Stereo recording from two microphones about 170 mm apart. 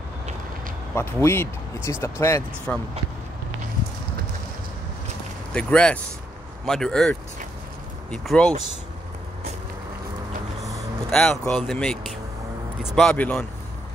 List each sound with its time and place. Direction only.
0.9 s speech: 15° left (ahead or behind)
5.5 s speech: 5° left (ahead or behind)
11.1 s speech: 5° left (ahead or behind)